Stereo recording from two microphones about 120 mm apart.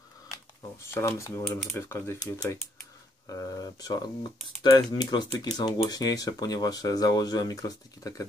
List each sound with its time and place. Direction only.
0.8 s speech: 20° left (ahead or behind)
3.3 s speech: 30° left (ahead or behind)